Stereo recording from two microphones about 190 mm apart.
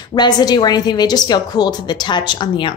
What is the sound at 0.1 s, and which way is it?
A woman's voice, 20° left (ahead or behind).